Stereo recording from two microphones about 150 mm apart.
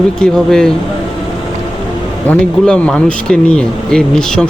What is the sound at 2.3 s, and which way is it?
Speech, 5° left (ahead or behind).